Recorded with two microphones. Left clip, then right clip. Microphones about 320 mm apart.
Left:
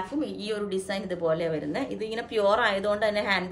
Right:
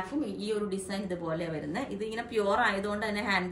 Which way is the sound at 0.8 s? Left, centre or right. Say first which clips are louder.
Left 7 dB; centre.